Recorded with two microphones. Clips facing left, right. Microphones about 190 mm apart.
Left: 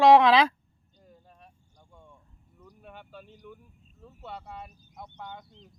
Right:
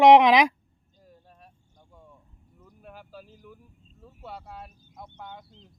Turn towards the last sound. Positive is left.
turn(degrees=-5)  # may be behind; listen again after turning